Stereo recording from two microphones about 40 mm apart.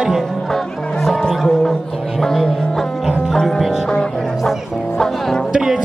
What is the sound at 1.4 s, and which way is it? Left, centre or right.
Speech, centre.